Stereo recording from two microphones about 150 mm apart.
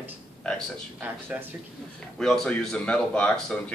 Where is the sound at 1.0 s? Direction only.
10° right (ahead or behind).